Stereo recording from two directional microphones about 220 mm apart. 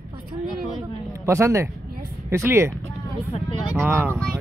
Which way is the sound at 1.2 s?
10° right (ahead or behind).